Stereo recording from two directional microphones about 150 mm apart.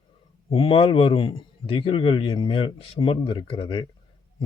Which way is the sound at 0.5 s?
35° left (ahead or behind).